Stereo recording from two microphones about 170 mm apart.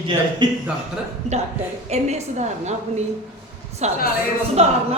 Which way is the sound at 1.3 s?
40° right (ahead or behind).